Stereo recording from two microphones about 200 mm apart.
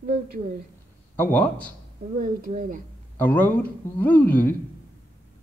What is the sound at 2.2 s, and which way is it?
Speech, 45° right (ahead or behind).